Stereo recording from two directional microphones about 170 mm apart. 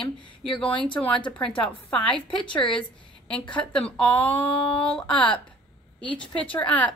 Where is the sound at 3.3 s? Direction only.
5° left (ahead or behind).